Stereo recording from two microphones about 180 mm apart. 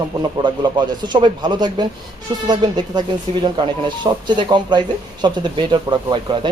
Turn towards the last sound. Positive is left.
turn(degrees=-25)  # may be behind; listen again after turning